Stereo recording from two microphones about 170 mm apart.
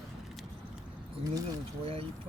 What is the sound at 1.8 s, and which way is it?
Speech, 35° right (ahead or behind).